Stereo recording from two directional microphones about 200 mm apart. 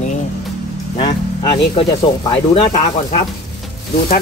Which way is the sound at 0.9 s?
25° left (ahead or behind).